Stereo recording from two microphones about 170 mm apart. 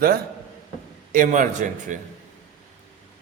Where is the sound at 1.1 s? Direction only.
50° right (ahead or behind).